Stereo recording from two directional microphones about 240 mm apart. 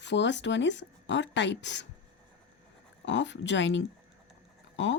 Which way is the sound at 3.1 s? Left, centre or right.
Left.